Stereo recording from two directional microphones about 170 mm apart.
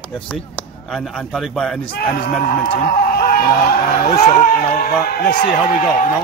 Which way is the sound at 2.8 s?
60° left (ahead or behind).